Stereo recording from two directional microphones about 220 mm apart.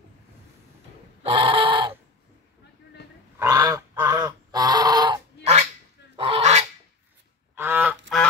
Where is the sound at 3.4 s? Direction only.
15° right (ahead or behind); by 6.6 s 30° right (ahead or behind).